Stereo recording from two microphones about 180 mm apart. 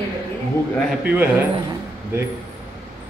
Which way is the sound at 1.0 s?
10° right (ahead or behind).